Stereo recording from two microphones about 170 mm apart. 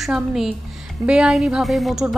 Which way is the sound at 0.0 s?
Centre (ahead or behind).